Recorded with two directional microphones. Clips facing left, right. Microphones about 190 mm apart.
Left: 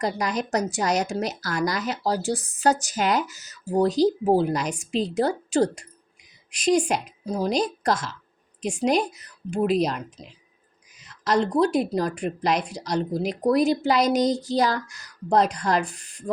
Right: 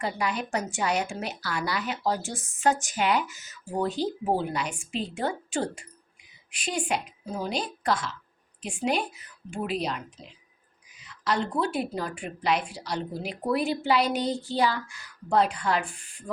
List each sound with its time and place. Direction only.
0.0 s a woman's voice: 40° left (ahead or behind)